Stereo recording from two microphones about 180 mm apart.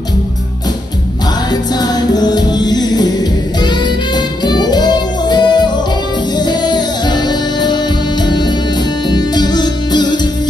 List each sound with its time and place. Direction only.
1.5 s music: 20° left (ahead or behind)